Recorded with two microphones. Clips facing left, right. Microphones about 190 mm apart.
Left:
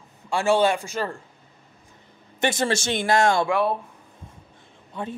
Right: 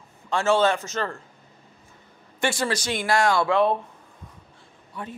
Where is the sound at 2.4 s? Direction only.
20° left (ahead or behind).